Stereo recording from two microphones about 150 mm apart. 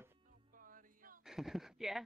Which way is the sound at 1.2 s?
5° right (ahead or behind).